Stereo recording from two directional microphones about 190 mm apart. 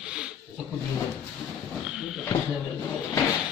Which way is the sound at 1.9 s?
Centre (ahead or behind).